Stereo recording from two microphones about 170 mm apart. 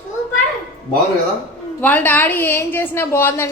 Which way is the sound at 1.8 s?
10° left (ahead or behind).